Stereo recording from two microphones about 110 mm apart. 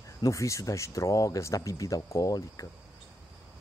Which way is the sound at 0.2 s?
30° left (ahead or behind).